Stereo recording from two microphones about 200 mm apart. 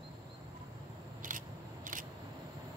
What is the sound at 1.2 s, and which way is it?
Scissors, 40° right (ahead or behind).